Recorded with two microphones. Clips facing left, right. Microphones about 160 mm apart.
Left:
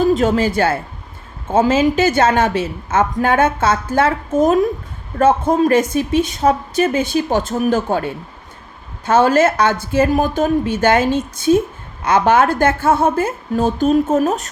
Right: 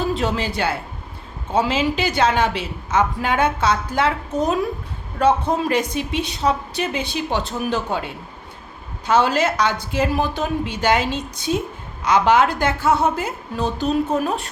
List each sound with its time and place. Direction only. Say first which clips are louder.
0.0 s a woman's voice: left 8 dB; 45° left (ahead or behind)